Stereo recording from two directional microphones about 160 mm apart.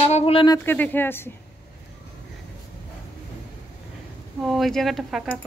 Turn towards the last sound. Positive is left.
turn(degrees=0)  # may be behind; listen again after turning